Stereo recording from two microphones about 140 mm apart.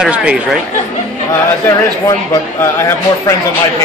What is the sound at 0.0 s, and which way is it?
Speech, 10° right (ahead or behind).